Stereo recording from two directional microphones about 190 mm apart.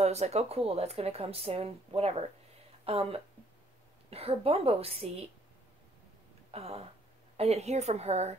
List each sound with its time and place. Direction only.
0.0 s speech: 35° right (ahead or behind)
6.5 s speech: 30° right (ahead or behind)